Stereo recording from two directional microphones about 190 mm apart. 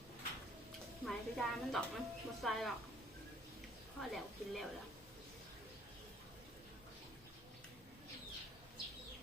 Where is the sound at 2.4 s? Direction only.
Centre (ahead or behind).